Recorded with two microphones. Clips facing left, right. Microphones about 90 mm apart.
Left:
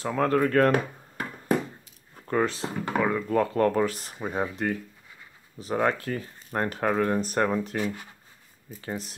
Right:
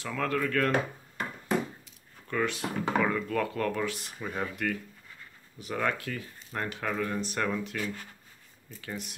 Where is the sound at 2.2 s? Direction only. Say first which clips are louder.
Left 5 dB; 35° left (ahead or behind).